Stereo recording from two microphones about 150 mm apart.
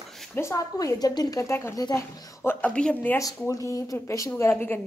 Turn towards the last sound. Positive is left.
turn(degrees=10)  # may be behind; listen again after turning